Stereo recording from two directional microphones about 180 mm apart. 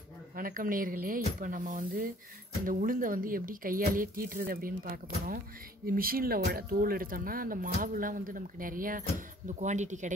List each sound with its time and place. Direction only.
0.4 s speech: 50° right (ahead or behind)